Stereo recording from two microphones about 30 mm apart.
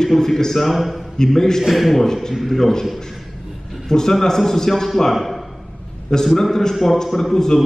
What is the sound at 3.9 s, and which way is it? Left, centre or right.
A man's voice, centre.